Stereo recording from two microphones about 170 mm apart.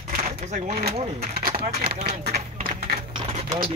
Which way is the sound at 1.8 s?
65° right (ahead or behind).